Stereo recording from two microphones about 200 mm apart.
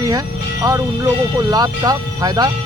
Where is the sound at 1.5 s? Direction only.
20° right (ahead or behind).